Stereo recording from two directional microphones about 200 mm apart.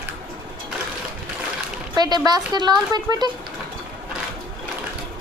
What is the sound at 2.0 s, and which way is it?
Speech, 20° right (ahead or behind).